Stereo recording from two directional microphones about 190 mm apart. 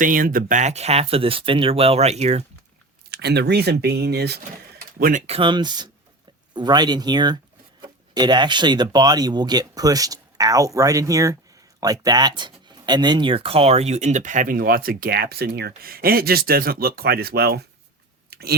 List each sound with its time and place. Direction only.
0.0 s speech: 45° right (ahead or behind)
3.1 s speech: 60° right (ahead or behind)
4.9 s speech: 45° right (ahead or behind)
5.2 s speech: 30° right (ahead or behind); by 17.7 s 55° right (ahead or behind)
18.3 s chewing: 55° right (ahead or behind)